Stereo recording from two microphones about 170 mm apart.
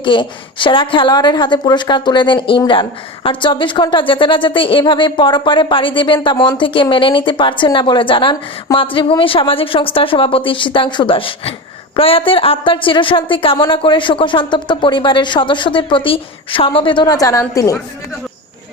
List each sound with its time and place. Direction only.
0.0 s a woman's voice: 30° left (ahead or behind)